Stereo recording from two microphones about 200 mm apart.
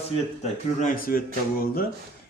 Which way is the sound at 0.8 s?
45° left (ahead or behind).